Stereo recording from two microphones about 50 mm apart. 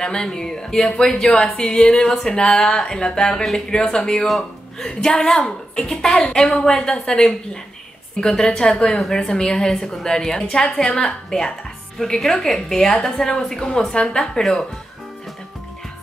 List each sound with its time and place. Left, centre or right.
0.0 s speech: centre